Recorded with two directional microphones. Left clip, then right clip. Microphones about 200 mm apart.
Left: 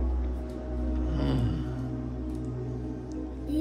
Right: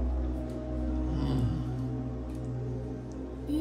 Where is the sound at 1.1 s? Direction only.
10° right (ahead or behind).